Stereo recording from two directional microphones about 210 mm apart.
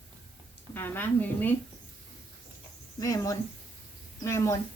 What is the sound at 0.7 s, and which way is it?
Speech, 10° left (ahead or behind).